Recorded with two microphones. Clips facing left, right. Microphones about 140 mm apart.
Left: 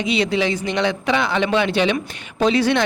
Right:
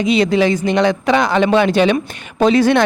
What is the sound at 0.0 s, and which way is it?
Speech, 45° right (ahead or behind).